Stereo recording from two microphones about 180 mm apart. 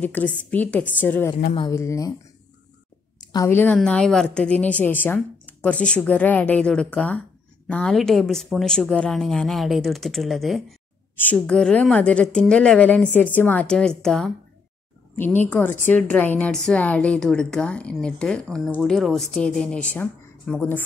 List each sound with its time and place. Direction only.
0.0 s a woman's voice: 10° left (ahead or behind)
3.2 s a woman's voice: 20° left (ahead or behind)